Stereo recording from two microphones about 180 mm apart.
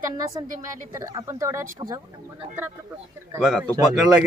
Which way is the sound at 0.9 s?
20° right (ahead or behind).